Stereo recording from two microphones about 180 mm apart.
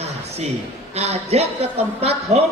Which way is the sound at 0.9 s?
35° right (ahead or behind).